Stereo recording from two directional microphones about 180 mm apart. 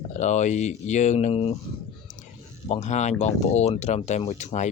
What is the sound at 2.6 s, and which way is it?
Speech, 40° left (ahead or behind).